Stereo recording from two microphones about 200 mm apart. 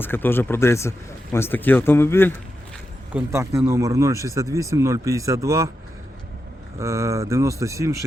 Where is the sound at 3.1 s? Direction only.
5° right (ahead or behind).